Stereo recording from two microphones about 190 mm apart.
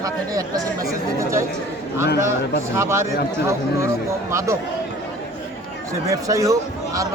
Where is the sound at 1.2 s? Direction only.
15° right (ahead or behind).